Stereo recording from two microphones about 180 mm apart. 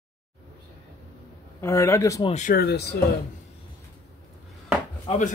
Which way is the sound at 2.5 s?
65° left (ahead or behind).